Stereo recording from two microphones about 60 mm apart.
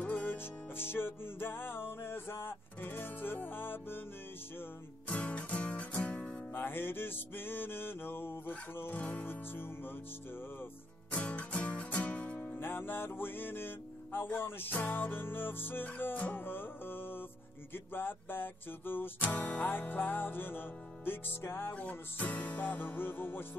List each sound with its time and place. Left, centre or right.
0.0 s music: left
5.0 s music: left
6.5 s music: left
8.9 s music: left
9.3 s music: left
11.1 s music: left
12.5 s music: left
21.7 s music: left